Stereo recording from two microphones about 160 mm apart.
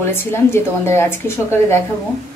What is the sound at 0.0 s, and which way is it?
A woman's voice, 15° left (ahead or behind).